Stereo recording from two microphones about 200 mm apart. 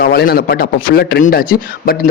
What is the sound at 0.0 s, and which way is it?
A man's voice, 50° left (ahead or behind).